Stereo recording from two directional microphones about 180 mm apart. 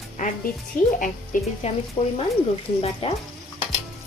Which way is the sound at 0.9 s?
50° left (ahead or behind).